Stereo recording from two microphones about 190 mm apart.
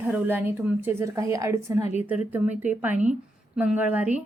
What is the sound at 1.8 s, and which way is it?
Speech, 35° left (ahead or behind).